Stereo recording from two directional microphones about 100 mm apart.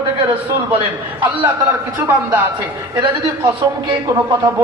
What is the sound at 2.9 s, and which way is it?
A man's voice, 50° right (ahead or behind).